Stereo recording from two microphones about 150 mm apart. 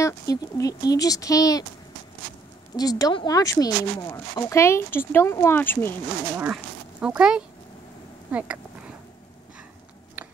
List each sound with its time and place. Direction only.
0.0 s speech: 25° left (ahead or behind)
2.7 s speech: 25° left (ahead or behind)
6.3 s speech: 10° right (ahead or behind)
10.2 s a sound: 10° right (ahead or behind)